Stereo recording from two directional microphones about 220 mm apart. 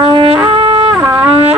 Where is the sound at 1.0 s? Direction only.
15° right (ahead or behind).